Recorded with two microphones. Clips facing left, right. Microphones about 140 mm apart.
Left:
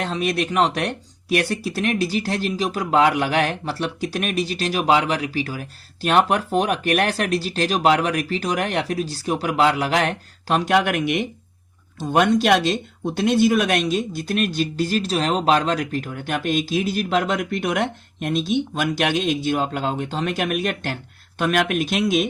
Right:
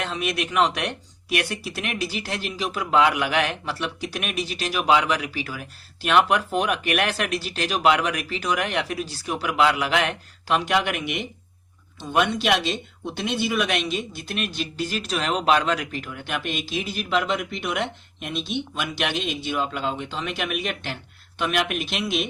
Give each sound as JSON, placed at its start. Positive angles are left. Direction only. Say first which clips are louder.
{"t": 0.0, "sound": "speech", "louder": "left 4 dB", "side_deg": 35}